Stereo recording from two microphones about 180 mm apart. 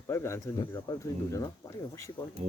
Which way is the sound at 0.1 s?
15° left (ahead or behind).